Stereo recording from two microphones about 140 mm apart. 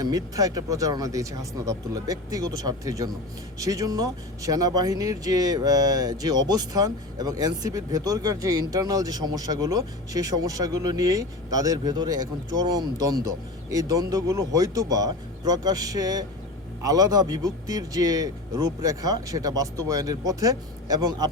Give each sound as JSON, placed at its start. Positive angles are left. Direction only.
{"t": 0.0, "sound": "speech", "side_deg": -25}